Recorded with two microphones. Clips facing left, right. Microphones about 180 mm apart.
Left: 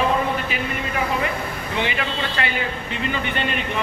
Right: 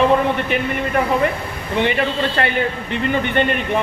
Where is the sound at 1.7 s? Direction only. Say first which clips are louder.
Right 7 dB; 55° right (ahead or behind).